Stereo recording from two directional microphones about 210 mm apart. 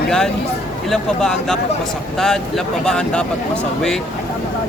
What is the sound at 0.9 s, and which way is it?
Speech, centre (ahead or behind).